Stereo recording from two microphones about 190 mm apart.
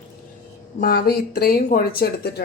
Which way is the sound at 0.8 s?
50° left (ahead or behind).